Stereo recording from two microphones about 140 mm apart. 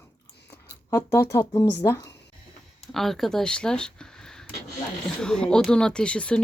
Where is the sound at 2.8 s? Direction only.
Centre (ahead or behind).